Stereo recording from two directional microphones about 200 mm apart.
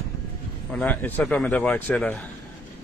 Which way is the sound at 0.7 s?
5° left (ahead or behind).